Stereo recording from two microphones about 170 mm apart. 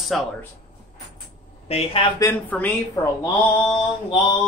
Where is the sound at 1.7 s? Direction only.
35° left (ahead or behind).